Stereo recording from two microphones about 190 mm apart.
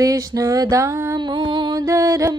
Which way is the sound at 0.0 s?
20° right (ahead or behind).